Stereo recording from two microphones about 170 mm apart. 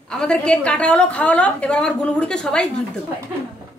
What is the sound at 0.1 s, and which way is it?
A woman's voice, 5° left (ahead or behind).